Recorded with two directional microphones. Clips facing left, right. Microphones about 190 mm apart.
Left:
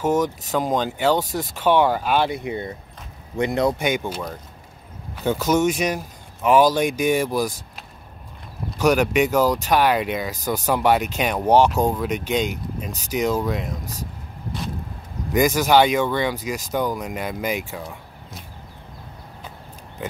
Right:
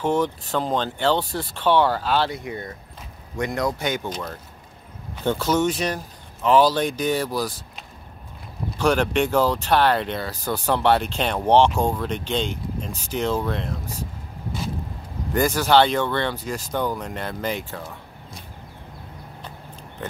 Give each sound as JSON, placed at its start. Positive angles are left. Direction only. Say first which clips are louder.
{"t": 0.0, "sound": "speech", "louder": "left 1 dB", "side_deg": 10}
{"t": 8.7, "sound": "speech", "louder": "left 2 dB", "side_deg": 10}
{"t": 15.3, "sound": "speech", "louder": "left 1 dB", "side_deg": 10}